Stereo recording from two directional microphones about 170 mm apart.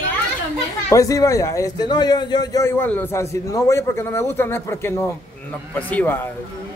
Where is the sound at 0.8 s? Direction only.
20° left (ahead or behind).